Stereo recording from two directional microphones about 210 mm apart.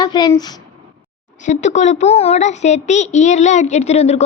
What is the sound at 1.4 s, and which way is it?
A child's voice, 35° left (ahead or behind).